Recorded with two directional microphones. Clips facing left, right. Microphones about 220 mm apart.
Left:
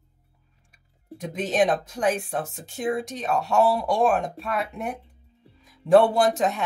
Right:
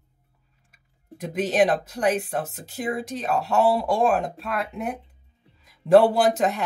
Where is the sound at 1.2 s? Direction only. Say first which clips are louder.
Right 2 dB; centre (ahead or behind).